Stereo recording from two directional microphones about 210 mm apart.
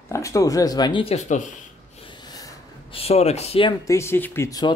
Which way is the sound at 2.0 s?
20° left (ahead or behind).